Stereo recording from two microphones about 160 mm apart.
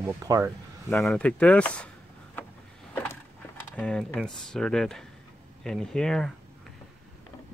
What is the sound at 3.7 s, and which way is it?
Speech, 5° left (ahead or behind).